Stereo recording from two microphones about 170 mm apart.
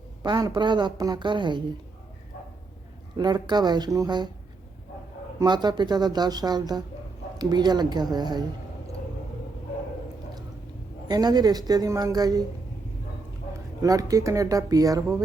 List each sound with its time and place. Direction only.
0.2 s a woman's voice: 25° right (ahead or behind)
3.2 s a woman's voice: 25° right (ahead or behind)
5.4 s a woman's voice: 25° right (ahead or behind)
11.1 s a woman's voice: 25° right (ahead or behind)
13.5 s speech: 20° right (ahead or behind)